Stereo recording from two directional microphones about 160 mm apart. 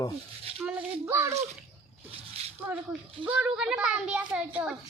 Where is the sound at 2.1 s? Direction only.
40° right (ahead or behind).